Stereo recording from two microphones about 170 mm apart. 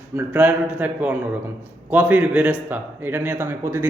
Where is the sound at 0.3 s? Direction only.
10° right (ahead or behind).